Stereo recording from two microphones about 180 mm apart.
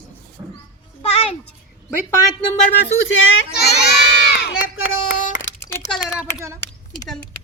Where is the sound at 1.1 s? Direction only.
35° left (ahead or behind).